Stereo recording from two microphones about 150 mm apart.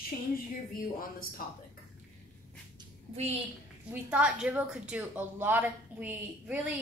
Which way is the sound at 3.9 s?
10° right (ahead or behind).